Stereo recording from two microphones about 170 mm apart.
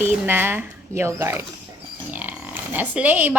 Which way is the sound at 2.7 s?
10° right (ahead or behind).